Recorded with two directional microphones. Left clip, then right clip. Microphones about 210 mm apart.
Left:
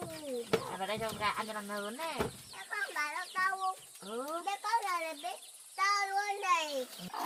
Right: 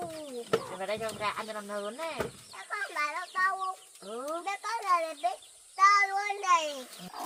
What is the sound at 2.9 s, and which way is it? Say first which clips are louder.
Speech: right 5 dB; 25° right (ahead or behind).